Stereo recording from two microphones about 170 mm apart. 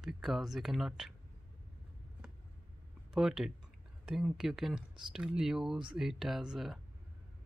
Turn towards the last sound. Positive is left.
turn(degrees=0)  # may be behind; listen again after turning